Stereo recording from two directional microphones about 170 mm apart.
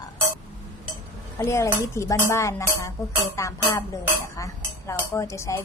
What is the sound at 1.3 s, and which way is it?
Speech, 15° left (ahead or behind).